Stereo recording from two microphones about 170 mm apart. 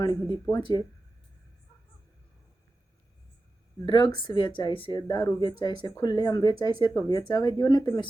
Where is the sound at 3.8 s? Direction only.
25° left (ahead or behind).